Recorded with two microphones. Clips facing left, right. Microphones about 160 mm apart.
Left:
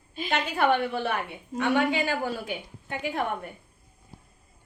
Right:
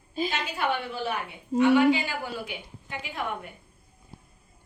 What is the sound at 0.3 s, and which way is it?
A woman's voice, 55° left (ahead or behind).